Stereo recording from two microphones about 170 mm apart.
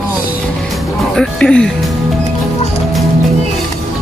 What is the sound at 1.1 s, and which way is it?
Speech, 5° left (ahead or behind).